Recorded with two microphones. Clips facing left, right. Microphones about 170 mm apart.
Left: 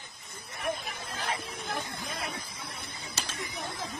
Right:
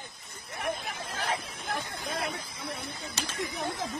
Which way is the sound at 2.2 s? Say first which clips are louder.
Right 3 dB; 65° right (ahead or behind).